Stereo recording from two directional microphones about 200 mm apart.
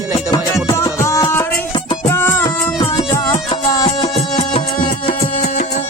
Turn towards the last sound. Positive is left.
turn(degrees=25)  # may be behind; listen again after turning